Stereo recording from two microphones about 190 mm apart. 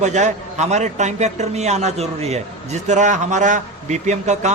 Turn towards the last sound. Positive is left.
turn(degrees=-35)  # may be behind; listen again after turning